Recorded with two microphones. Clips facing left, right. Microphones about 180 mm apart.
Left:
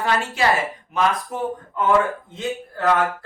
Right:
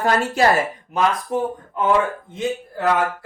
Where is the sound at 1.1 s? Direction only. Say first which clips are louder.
Right 2 dB; centre (ahead or behind).